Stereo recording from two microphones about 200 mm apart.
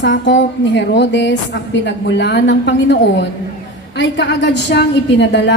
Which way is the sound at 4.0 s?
60° left (ahead or behind).